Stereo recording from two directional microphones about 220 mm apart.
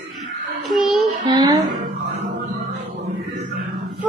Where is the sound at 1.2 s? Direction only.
20° right (ahead or behind).